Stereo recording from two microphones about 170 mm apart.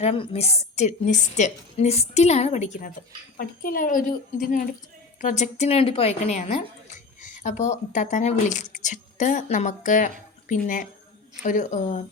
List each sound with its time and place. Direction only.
0.0 s a woman's voice: 35° left (ahead or behind)
5.2 s a woman's voice: 45° left (ahead or behind)